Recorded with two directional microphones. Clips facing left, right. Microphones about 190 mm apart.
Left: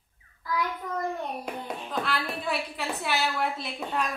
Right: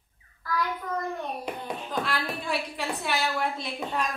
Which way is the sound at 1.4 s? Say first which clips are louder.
Right 1 dB; centre (ahead or behind).